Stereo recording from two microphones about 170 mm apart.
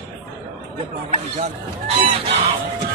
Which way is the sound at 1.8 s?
35° right (ahead or behind).